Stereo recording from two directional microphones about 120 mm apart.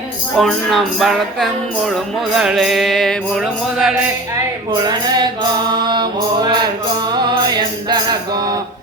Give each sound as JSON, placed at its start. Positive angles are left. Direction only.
{"t": 0.3, "sound": "music", "side_deg": 0}
{"t": 4.7, "sound": "music", "side_deg": -35}